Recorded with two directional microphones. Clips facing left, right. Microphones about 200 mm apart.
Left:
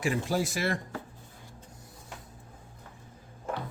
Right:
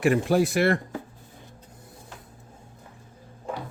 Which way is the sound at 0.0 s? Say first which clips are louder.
Right 8 dB; 60° right (ahead or behind).